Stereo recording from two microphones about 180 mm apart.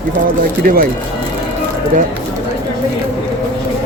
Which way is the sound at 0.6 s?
55° right (ahead or behind).